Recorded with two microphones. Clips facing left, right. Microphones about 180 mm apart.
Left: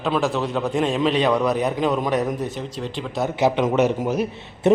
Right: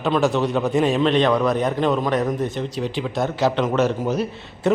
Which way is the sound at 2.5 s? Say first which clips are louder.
Right 4 dB; centre (ahead or behind).